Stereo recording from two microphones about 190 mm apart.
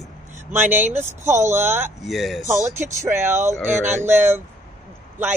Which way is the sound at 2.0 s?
Centre (ahead or behind).